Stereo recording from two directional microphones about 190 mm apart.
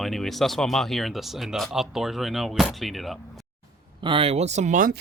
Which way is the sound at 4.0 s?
30° right (ahead or behind).